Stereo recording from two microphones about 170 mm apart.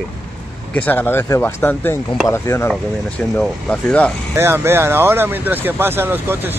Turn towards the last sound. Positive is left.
turn(degrees=-15)  # may be behind; listen again after turning